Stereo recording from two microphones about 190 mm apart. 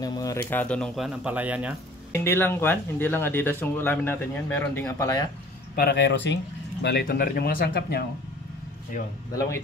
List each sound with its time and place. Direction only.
0.0 s speech: 20° left (ahead or behind); by 1.8 s 5° right (ahead or behind)
2.1 s speech: 10° left (ahead or behind)
5.8 s speech: 60° left (ahead or behind)
9.3 s speech: 15° left (ahead or behind)